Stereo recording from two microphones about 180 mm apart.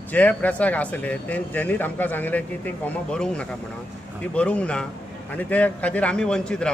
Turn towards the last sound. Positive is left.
turn(degrees=5)  # may be behind; listen again after turning